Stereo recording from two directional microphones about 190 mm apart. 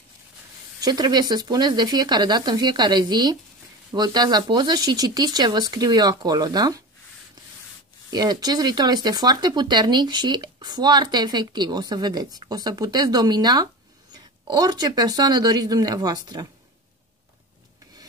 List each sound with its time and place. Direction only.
0.7 s speech: 20° right (ahead or behind)
8.1 s speech: 20° right (ahead or behind)